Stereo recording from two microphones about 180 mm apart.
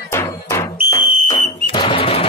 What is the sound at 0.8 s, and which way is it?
Fire alarm, 20° left (ahead or behind).